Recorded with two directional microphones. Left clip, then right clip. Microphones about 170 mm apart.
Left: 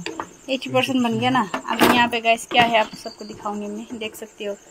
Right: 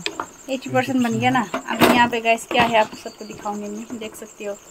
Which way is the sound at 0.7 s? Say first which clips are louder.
Even; 15° left (ahead or behind).